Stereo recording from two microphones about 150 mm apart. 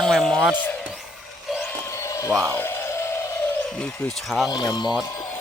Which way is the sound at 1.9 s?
20° left (ahead or behind).